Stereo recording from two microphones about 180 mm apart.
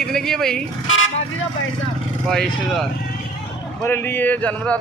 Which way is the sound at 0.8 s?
90° left.